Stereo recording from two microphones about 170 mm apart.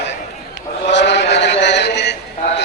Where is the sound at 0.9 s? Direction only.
90° left.